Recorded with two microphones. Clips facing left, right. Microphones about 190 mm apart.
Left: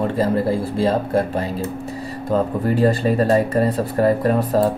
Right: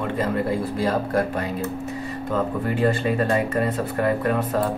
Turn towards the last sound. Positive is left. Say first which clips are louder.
# left 5 dB
turn(degrees=35)  # may be behind; listen again after turning